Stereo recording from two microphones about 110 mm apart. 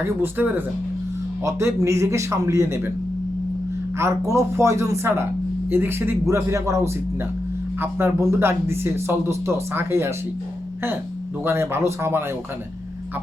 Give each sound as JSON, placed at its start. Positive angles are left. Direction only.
{"t": 0.2, "sound": "speech", "side_deg": -20}
{"t": 3.9, "sound": "speech", "side_deg": -25}
{"t": 11.4, "sound": "speech", "side_deg": -20}